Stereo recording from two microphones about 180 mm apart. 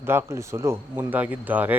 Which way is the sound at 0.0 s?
15° right (ahead or behind).